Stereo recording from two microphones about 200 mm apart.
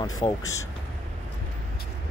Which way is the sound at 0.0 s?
20° left (ahead or behind).